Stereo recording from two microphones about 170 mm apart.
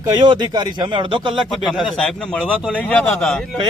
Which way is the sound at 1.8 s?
Centre (ahead or behind).